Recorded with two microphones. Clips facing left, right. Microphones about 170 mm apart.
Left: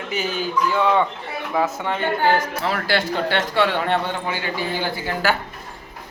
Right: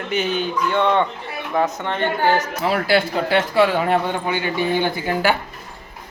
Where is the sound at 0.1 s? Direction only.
5° left (ahead or behind).